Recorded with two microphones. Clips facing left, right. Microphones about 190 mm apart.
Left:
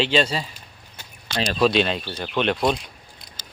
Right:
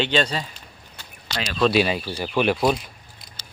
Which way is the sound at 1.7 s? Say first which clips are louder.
Right 1 dB; 5° right (ahead or behind).